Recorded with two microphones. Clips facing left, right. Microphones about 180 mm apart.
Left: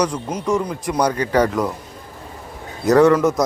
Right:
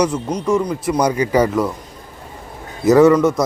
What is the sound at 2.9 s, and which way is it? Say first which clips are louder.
Speech: right 2 dB; 5° right (ahead or behind).